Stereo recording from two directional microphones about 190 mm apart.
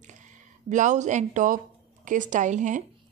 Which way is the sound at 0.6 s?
40° right (ahead or behind).